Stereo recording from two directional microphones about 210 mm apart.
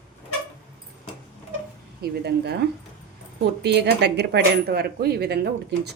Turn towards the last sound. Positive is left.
turn(degrees=-50)  # may be behind; listen again after turning